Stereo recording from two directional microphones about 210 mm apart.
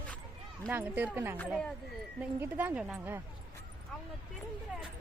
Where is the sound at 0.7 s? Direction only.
10° right (ahead or behind).